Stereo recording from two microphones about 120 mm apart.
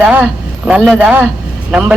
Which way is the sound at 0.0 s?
10° right (ahead or behind).